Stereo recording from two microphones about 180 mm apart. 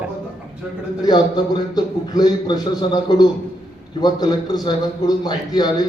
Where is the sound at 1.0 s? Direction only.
25° left (ahead or behind).